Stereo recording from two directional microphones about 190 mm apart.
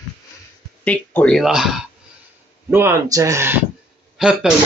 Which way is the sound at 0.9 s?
5° left (ahead or behind).